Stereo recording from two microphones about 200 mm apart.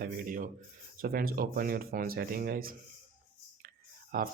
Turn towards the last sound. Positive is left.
turn(degrees=-45)  # may be behind; listen again after turning